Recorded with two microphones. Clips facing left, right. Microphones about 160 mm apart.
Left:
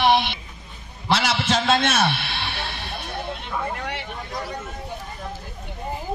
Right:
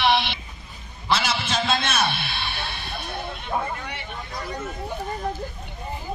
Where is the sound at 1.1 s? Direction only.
80° left.